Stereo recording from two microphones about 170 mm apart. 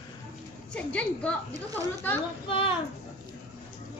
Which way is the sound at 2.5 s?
30° left (ahead or behind).